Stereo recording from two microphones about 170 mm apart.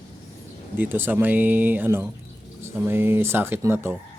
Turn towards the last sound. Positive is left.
turn(degrees=-15)  # may be behind; listen again after turning